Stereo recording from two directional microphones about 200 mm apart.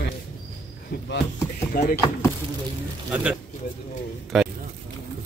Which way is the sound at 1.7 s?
45° left (ahead or behind).